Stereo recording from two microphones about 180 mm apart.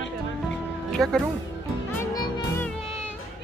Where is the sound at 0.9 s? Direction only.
5° left (ahead or behind).